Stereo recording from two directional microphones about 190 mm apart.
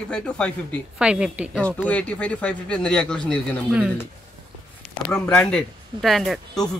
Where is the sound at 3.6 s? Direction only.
5° right (ahead or behind).